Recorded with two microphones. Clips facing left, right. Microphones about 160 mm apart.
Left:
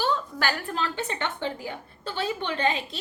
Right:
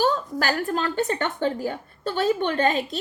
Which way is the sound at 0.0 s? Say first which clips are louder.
Right 4 dB; 40° right (ahead or behind).